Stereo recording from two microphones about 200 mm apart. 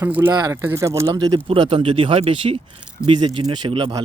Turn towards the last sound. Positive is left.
turn(degrees=-25)  # may be behind; listen again after turning